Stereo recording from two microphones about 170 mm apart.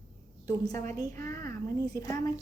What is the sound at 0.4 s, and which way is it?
A woman's voice, 20° left (ahead or behind).